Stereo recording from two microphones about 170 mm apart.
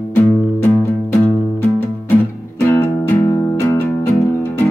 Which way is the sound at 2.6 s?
15° left (ahead or behind).